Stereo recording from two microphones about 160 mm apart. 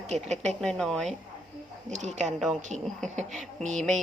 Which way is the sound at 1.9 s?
45° right (ahead or behind).